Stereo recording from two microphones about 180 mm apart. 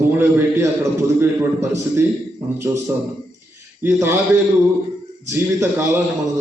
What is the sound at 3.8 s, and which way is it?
Speech, 15° right (ahead or behind).